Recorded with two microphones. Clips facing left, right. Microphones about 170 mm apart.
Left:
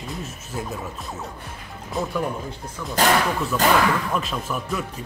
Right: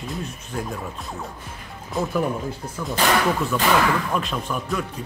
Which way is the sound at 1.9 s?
Centre (ahead or behind).